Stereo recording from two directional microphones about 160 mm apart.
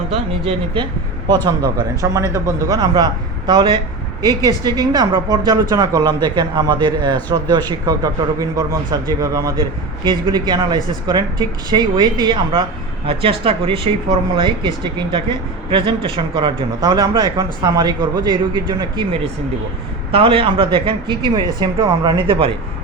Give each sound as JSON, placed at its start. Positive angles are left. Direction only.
{"t": 0.1, "sound": "speech", "side_deg": -35}
{"t": 1.5, "sound": "a man's voice", "side_deg": -25}
{"t": 20.1, "sound": "a man's voice", "side_deg": -35}